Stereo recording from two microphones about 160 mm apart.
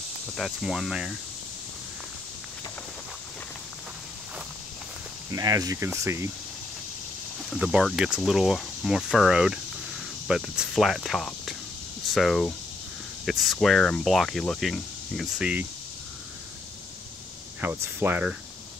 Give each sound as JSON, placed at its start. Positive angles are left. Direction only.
{"t": 0.4, "sound": "speech", "side_deg": 0}
{"t": 5.3, "sound": "speech", "side_deg": -20}
{"t": 7.4, "sound": "speech", "side_deg": -5}
{"t": 17.6, "sound": "speech", "side_deg": -10}